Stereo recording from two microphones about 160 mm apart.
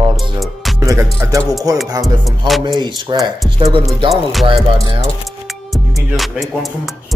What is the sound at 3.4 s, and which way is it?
Speech, 30° right (ahead or behind).